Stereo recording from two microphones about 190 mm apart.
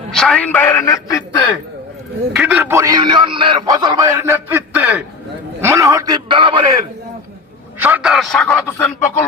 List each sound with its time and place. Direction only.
0.1 s a man's voice: 5° left (ahead or behind)
2.3 s a man's voice: 5° right (ahead or behind); by 6.6 s 25° right (ahead or behind)
7.8 s a man's voice: 5° right (ahead or behind); by 9.1 s 10° left (ahead or behind)